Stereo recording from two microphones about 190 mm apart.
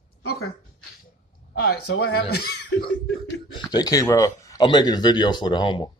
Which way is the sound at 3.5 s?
25° left (ahead or behind).